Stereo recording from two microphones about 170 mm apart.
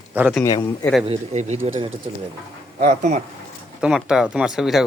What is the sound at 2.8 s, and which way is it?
Speech, 45° right (ahead or behind).